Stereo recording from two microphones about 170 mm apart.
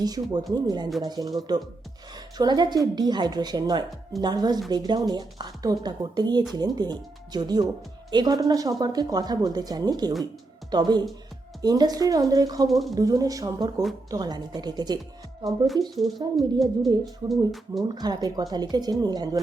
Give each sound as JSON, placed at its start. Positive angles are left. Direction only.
{"t": 0.0, "sound": "a woman's voice", "side_deg": -25}
{"t": 12.6, "sound": "speech", "side_deg": 0}
{"t": 12.9, "sound": "a woman's voice", "side_deg": -20}
{"t": 15.6, "sound": "speech", "side_deg": 0}
{"t": 16.1, "sound": "a woman's voice", "side_deg": -25}
{"t": 17.2, "sound": "speech", "side_deg": 0}
{"t": 17.8, "sound": "a woman's voice", "side_deg": -25}